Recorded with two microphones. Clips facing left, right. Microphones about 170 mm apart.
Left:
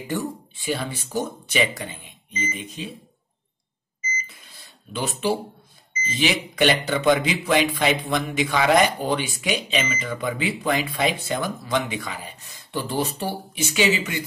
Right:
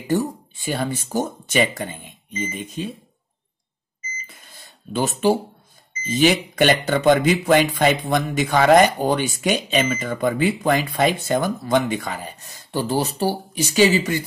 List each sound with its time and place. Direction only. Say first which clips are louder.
0.1 s speech: right 7 dB; 40° right (ahead or behind)
4.3 s cash register: right 3 dB; 45° right (ahead or behind)
6.0 s a man's voice: right 6 dB; 45° right (ahead or behind)